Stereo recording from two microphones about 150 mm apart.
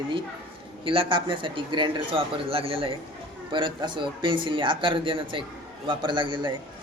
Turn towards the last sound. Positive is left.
turn(degrees=-30)  # may be behind; listen again after turning